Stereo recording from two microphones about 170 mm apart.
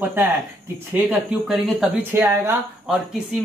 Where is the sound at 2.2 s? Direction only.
15° right (ahead or behind).